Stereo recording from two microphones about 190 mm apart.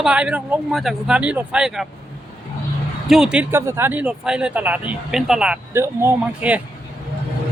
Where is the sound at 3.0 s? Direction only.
5° right (ahead or behind).